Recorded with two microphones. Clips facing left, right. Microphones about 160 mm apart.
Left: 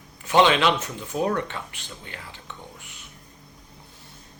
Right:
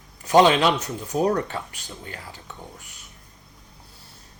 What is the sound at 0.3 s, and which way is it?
Speech, 40° right (ahead or behind).